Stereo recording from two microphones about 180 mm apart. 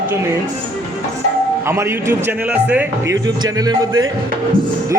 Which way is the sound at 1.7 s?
15° right (ahead or behind).